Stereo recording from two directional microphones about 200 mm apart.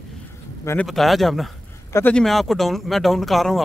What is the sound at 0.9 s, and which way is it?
Speech, centre (ahead or behind).